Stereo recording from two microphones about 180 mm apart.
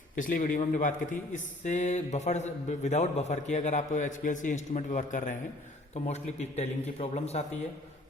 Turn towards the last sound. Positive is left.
turn(degrees=35)  # may be behind; listen again after turning